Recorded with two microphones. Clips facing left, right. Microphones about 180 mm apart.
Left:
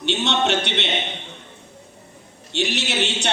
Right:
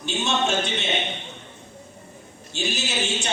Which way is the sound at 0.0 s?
70° left (ahead or behind).